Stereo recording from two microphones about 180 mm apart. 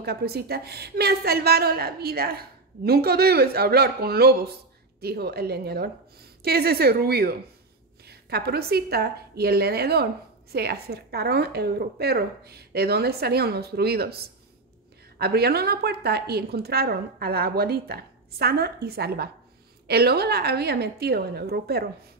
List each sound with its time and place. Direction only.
0.0 s a woman's voice: 60° right (ahead or behind)